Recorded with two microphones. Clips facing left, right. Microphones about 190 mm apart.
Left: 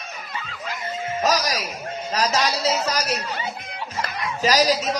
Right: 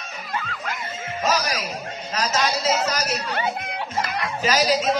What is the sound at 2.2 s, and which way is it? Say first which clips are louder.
Music: even; 35° left (ahead or behind).